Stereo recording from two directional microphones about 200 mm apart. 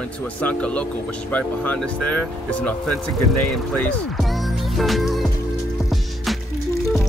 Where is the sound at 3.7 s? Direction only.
5° left (ahead or behind).